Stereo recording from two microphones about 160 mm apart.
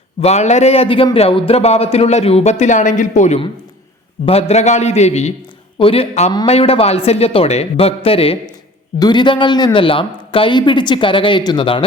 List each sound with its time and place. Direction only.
0.2 s a man's voice: 45° left (ahead or behind)